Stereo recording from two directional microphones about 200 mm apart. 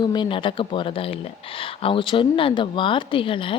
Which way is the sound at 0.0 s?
20° left (ahead or behind).